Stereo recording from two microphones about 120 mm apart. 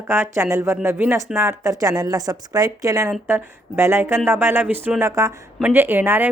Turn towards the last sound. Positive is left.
turn(degrees=-15)  # may be behind; listen again after turning